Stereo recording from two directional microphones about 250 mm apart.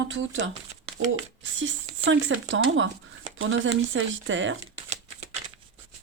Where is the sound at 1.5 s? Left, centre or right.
Right.